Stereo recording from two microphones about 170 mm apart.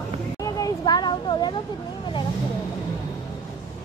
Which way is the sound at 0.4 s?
20° left (ahead or behind).